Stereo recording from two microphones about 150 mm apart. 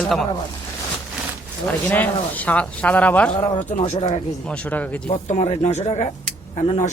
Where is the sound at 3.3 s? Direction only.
35° left (ahead or behind).